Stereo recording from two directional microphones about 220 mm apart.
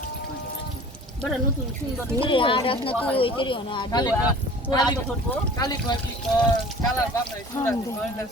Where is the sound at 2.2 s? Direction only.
25° left (ahead or behind).